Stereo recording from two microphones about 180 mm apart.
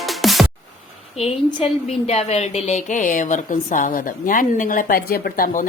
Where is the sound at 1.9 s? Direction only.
35° left (ahead or behind).